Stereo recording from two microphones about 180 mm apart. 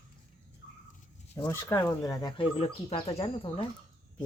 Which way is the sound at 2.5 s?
35° left (ahead or behind).